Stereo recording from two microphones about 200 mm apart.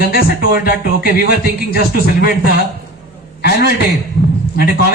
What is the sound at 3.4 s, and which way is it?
Speech, 55° left (ahead or behind).